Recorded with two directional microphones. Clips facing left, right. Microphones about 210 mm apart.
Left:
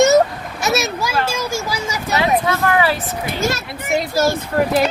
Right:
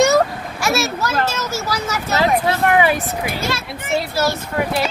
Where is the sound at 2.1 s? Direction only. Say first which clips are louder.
Even; 30° right (ahead or behind).